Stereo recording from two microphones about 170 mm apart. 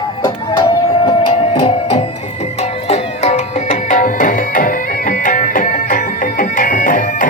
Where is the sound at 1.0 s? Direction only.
30° left (ahead or behind).